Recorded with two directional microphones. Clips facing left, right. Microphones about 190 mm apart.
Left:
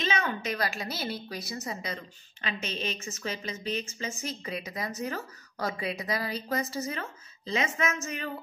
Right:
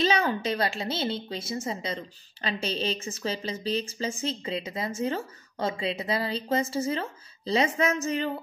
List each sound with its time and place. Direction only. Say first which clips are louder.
0.0 s a woman's voice: right 6 dB; 35° right (ahead or behind)